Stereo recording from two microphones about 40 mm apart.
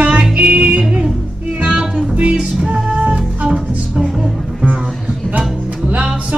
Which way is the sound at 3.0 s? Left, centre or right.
Right.